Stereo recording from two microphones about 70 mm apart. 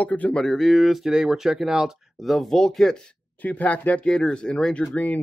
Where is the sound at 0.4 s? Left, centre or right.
Centre.